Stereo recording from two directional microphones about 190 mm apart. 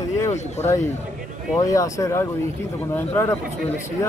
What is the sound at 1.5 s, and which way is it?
Speech, 15° left (ahead or behind).